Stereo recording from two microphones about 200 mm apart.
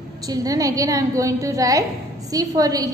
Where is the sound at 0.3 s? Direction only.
15° right (ahead or behind).